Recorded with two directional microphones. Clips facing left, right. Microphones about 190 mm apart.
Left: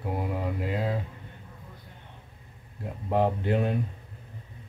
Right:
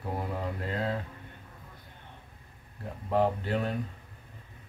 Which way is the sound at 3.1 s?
15° left (ahead or behind).